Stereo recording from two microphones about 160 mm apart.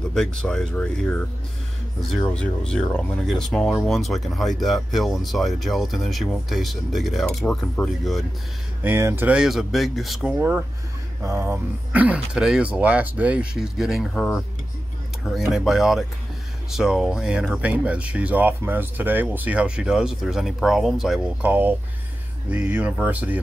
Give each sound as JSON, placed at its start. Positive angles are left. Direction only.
{"t": 0.1, "sound": "speech", "side_deg": 5}
{"t": 2.2, "sound": "speech", "side_deg": 5}
{"t": 8.8, "sound": "speech", "side_deg": -15}
{"t": 11.2, "sound": "speech", "side_deg": -15}